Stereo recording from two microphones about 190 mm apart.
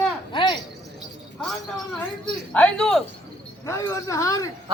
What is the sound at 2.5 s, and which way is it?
Speech, 5° left (ahead or behind).